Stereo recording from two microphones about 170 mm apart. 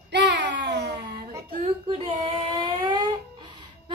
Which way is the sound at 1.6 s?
40° right (ahead or behind).